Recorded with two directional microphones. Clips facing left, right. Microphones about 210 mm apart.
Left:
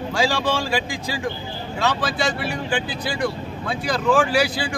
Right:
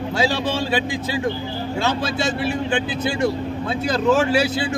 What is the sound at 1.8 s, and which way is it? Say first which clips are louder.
Speech: left 1 dB; 25° right (ahead or behind).